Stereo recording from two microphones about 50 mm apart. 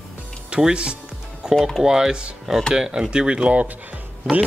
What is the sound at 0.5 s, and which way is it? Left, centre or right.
Speech, centre.